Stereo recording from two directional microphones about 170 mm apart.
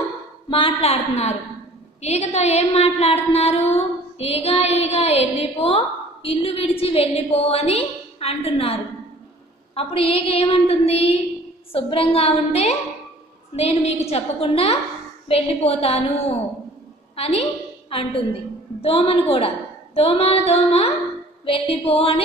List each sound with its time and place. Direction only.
0.5 s a woman's voice: 30° left (ahead or behind)
9.8 s a woman's voice: 35° left (ahead or behind)